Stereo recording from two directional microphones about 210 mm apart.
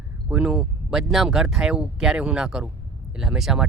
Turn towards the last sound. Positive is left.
turn(degrees=-5)  # may be behind; listen again after turning